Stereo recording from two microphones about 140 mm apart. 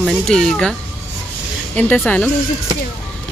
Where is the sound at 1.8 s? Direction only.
10° left (ahead or behind).